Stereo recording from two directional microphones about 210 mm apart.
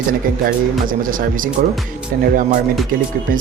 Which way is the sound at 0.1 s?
40° right (ahead or behind).